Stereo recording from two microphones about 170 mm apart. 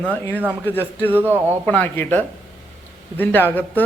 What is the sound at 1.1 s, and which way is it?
Speech, 10° right (ahead or behind).